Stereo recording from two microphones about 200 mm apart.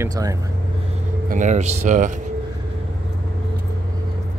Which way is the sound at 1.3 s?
35° right (ahead or behind).